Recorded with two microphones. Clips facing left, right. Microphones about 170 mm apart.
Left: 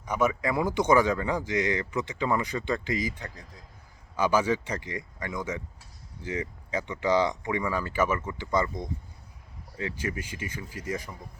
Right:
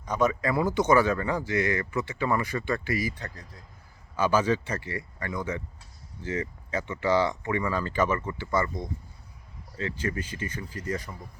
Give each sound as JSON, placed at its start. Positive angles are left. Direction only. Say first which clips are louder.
{"t": 0.0, "sound": "speech", "louder": "right 1 dB", "side_deg": 10}